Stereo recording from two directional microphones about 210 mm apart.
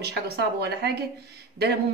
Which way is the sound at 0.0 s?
50° right (ahead or behind).